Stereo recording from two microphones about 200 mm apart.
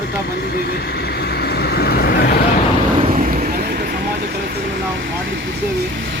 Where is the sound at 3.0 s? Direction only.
40° right (ahead or behind).